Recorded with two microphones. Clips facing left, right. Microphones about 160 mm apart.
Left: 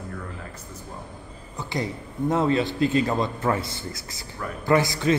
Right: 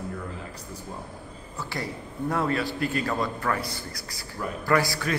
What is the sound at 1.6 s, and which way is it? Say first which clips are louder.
A man's voice: left 4 dB; 20° left (ahead or behind).